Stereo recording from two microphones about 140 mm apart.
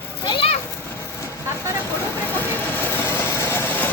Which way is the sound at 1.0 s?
20° left (ahead or behind).